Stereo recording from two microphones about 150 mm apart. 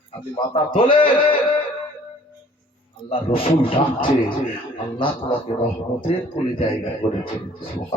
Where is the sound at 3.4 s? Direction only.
35° left (ahead or behind).